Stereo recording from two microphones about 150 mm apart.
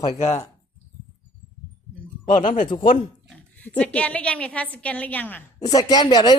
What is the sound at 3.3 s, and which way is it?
Speech, 10° left (ahead or behind).